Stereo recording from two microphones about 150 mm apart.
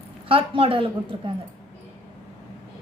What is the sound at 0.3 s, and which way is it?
Speech, 35° right (ahead or behind).